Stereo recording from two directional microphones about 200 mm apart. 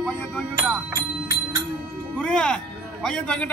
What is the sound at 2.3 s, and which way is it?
Music, 5° left (ahead or behind).